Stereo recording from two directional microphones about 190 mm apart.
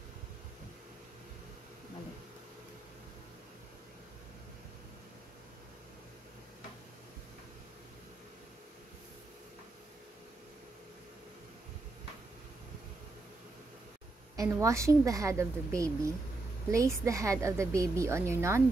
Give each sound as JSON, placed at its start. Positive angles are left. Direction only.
{"t": 14.3, "sound": "a woman's voice", "side_deg": -15}